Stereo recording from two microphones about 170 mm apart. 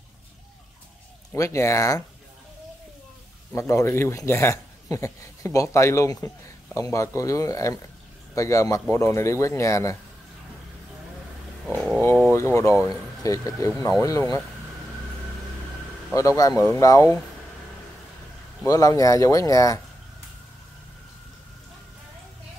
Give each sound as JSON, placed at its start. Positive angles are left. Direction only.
{"t": 1.3, "sound": "speech", "side_deg": 15}
{"t": 3.5, "sound": "speech", "side_deg": 15}
{"t": 11.6, "sound": "roaring cats", "side_deg": 0}
{"t": 12.2, "sound": "speech", "side_deg": 15}
{"t": 16.1, "sound": "speech", "side_deg": 20}
{"t": 18.6, "sound": "speech", "side_deg": 20}